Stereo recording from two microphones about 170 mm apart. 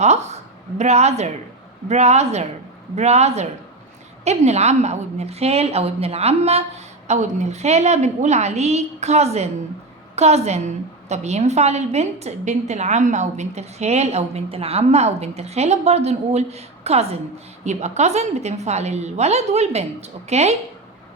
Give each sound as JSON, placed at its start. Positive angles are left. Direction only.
{"t": 0.0, "sound": "a woman's voice", "side_deg": -40}